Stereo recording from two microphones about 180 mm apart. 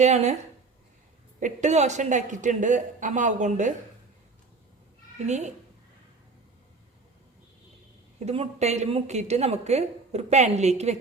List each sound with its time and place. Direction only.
0.0 s a woman's voice: 40° right (ahead or behind)
1.4 s speech: 40° right (ahead or behind)
5.2 s a woman's voice: 40° right (ahead or behind)
8.2 s a woman's voice: 35° right (ahead or behind)